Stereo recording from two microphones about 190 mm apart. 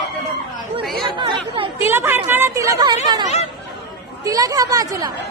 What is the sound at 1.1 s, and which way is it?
Speech, 25° right (ahead or behind).